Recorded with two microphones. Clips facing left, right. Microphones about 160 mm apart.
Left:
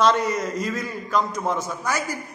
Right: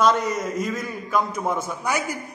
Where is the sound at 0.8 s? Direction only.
15° right (ahead or behind).